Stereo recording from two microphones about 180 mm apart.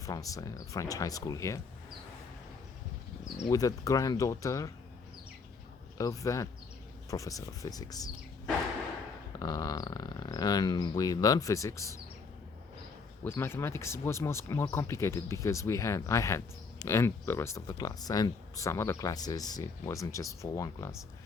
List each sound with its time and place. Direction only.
0.0 s speech: 20° left (ahead or behind)
3.5 s speech: 20° left (ahead or behind)
6.0 s speech: 20° left (ahead or behind)
9.4 s speech: 20° left (ahead or behind)
13.2 s speech: 15° left (ahead or behind)